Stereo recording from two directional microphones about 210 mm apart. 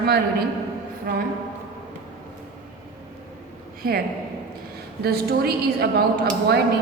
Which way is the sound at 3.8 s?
45° right (ahead or behind).